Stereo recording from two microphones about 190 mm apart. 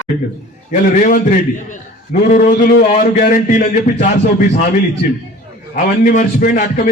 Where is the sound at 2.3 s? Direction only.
45° left (ahead or behind).